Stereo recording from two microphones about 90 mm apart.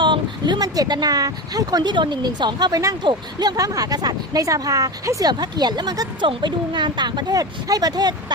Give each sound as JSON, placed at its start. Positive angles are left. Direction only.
{"t": 0.0, "sound": "speech", "side_deg": -60}
{"t": 6.2, "sound": "speech", "side_deg": -60}